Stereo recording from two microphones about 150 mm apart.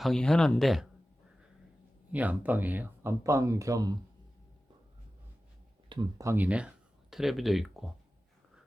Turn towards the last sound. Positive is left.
turn(degrees=0)  # may be behind; listen again after turning